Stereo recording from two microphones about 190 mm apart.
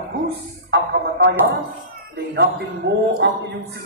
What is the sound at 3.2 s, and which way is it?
Speech, 65° right (ahead or behind).